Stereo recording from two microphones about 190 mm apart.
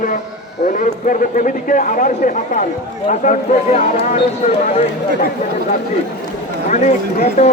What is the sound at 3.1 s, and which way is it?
Speech, 40° left (ahead or behind).